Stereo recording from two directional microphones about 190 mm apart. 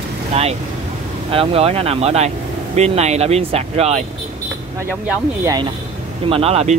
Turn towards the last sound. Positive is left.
turn(degrees=-35)  # may be behind; listen again after turning